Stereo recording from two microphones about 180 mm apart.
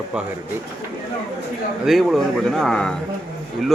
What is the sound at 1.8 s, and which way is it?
Speech, centre (ahead or behind).